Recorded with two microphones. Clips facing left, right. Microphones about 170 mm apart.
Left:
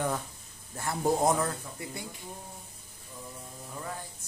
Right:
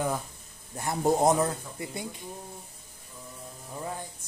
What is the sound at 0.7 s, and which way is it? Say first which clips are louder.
Speech: right 3 dB; 20° right (ahead or behind).